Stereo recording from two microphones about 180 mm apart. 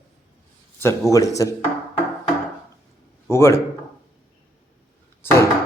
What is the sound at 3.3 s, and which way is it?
Speech, 15° left (ahead or behind).